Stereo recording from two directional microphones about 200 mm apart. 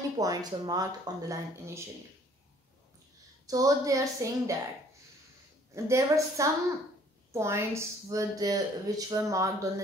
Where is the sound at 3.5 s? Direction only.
15° right (ahead or behind).